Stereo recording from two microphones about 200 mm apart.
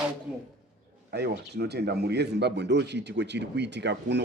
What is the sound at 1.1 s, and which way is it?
Speech, 55° right (ahead or behind).